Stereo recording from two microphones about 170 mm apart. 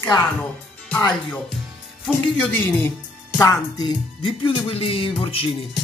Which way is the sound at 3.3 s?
20° left (ahead or behind).